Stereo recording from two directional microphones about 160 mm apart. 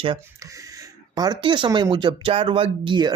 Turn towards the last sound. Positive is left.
turn(degrees=-30)  # may be behind; listen again after turning